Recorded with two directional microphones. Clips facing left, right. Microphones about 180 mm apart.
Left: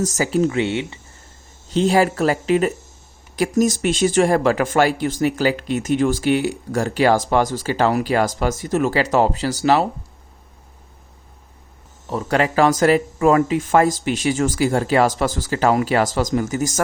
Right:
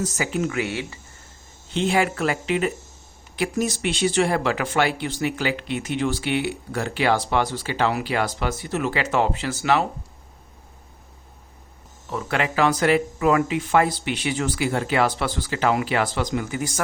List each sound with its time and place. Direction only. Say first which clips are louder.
0.0 s speech: left 6 dB; 40° left (ahead or behind); by 0.9 s 25° left (ahead or behind)
1.7 s speech: left 5 dB; 40° left (ahead or behind)
12.0 s speech: left 5 dB; 40° left (ahead or behind)